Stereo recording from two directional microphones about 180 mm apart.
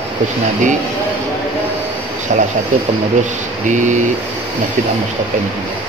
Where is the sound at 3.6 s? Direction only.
45° right (ahead or behind).